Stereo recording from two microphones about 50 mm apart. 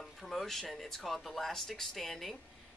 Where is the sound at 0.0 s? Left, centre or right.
Centre.